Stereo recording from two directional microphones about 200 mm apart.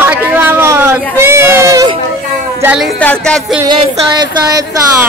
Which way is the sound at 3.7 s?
20° right (ahead or behind).